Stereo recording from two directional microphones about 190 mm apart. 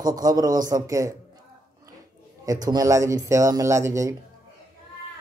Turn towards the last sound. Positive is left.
turn(degrees=-15)  # may be behind; listen again after turning